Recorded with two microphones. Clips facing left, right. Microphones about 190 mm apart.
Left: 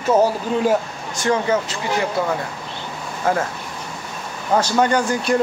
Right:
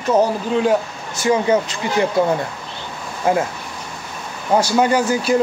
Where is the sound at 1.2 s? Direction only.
10° right (ahead or behind).